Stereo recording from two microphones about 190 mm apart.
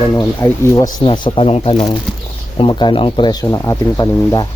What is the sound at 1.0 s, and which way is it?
Speech, 30° left (ahead or behind).